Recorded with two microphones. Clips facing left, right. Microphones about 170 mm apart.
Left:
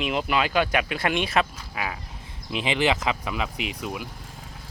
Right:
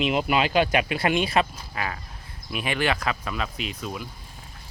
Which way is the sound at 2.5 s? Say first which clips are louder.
Left 2 dB; 20° left (ahead or behind).